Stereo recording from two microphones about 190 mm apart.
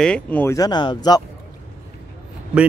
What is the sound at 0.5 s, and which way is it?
Speech, 20° left (ahead or behind).